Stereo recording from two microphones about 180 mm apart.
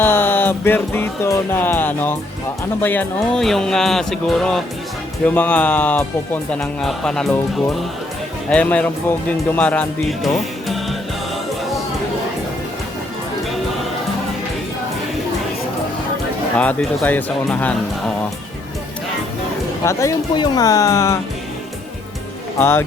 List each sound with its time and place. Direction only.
0.0 s speech: 10° left (ahead or behind)
16.6 s speech: 5° left (ahead or behind)
19.8 s speech: 15° left (ahead or behind)
22.5 s speech: 10° left (ahead or behind)